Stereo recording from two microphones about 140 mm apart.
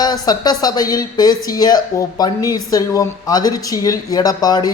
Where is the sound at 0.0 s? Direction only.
30° left (ahead or behind).